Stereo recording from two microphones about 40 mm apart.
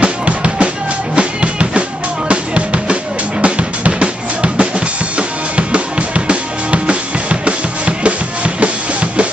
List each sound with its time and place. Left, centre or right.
0.0 s drum: right
1.1 s music: right
8.5 s drum kit: right